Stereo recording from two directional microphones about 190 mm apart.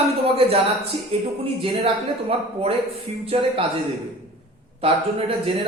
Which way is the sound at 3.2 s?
30° right (ahead or behind).